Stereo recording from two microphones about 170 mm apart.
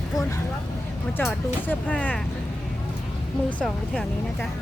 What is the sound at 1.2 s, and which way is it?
Speech, 5° left (ahead or behind).